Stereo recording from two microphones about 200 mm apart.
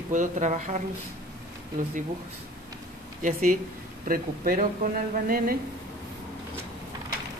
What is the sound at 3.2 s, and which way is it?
Speech, 40° right (ahead or behind).